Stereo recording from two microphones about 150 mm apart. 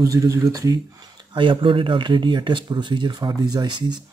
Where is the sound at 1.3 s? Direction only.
35° right (ahead or behind).